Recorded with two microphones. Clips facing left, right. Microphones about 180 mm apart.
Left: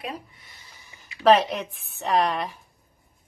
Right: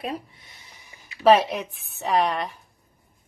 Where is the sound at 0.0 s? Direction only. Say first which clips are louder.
Right 4 dB; 30° right (ahead or behind).